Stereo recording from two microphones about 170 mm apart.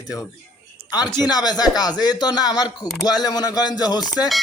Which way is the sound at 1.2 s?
25° left (ahead or behind).